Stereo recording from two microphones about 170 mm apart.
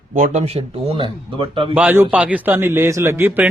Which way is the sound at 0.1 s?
45° right (ahead or behind).